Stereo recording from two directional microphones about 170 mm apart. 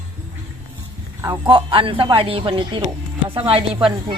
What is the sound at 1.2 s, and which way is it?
A woman's voice, 25° right (ahead or behind).